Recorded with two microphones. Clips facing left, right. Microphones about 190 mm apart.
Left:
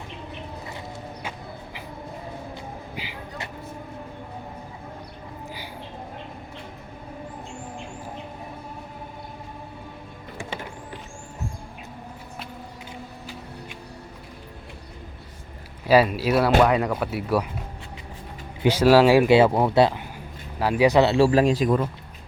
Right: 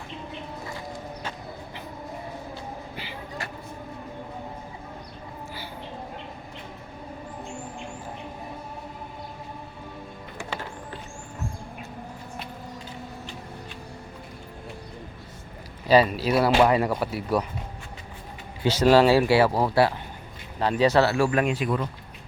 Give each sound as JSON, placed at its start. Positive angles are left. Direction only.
{"t": 2.9, "sound": "a sound", "side_deg": 15}
{"t": 10.3, "sound": "music", "side_deg": 15}
{"t": 15.9, "sound": "speech", "side_deg": 5}
{"t": 18.6, "sound": "speech", "side_deg": 10}
{"t": 20.6, "sound": "speech", "side_deg": 10}